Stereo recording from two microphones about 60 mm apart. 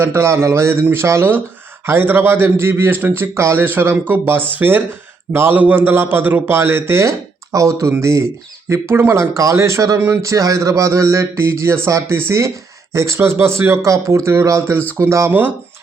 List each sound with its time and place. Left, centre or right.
0.0 s speech: right
1.9 s a man's voice: right
3.6 s a man's voice: right
5.5 s a man's voice: right
7.5 s speech: right
8.7 s speech: right
15.3 s a man's voice: right